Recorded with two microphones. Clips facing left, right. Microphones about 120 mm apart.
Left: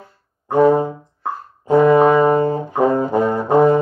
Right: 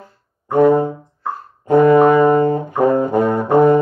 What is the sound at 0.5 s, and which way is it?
Music, 55° right (ahead or behind).